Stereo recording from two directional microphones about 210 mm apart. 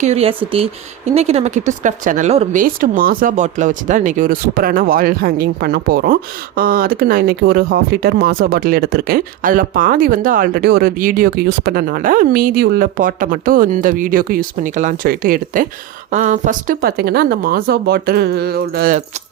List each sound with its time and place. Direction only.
0.0 s speech: 30° right (ahead or behind); by 18.9 s 45° right (ahead or behind)